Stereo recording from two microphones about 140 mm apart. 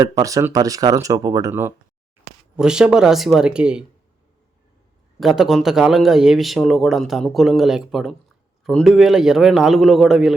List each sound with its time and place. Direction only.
0.0 s speech: 25° right (ahead or behind)
2.6 s speech: 5° right (ahead or behind)
5.2 s speech: centre (ahead or behind)